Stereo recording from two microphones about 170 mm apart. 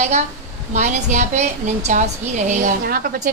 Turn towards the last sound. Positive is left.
turn(degrees=-60)  # may be behind; listen again after turning